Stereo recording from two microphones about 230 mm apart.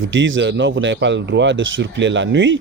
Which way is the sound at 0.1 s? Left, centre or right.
Right.